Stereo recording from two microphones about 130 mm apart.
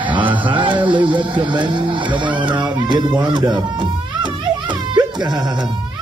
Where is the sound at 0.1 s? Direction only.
40° right (ahead or behind).